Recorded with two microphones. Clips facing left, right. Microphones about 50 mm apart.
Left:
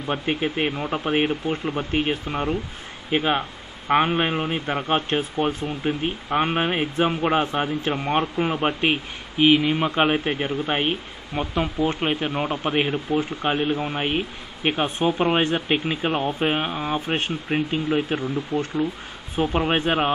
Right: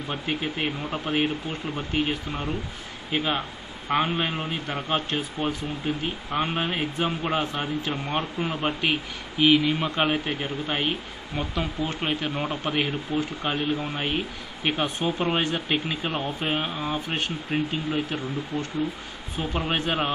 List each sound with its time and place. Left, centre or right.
0.0 s a man's voice: left
9.4 s speech: centre
18.5 s a man's voice: left